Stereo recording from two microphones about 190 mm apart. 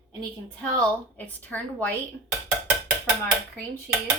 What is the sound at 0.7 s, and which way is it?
Speech, 10° left (ahead or behind).